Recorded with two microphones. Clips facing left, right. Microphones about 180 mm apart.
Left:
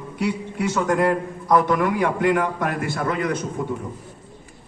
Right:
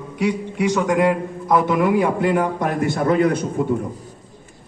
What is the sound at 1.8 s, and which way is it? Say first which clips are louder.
Speech: right 4 dB; 25° right (ahead or behind).